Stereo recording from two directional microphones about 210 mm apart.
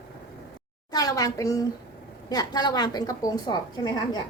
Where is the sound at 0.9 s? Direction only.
20° left (ahead or behind).